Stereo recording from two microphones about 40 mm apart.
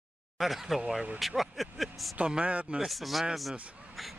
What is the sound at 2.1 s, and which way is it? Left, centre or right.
Speech, right.